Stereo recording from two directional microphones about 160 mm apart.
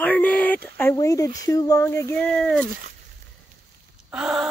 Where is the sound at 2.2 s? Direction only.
Centre (ahead or behind).